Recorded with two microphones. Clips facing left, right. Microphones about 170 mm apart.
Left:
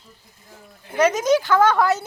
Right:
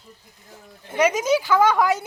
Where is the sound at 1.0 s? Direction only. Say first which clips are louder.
Left 2 dB; 10° right (ahead or behind).